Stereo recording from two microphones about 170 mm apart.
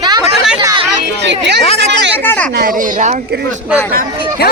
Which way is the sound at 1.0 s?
90° right.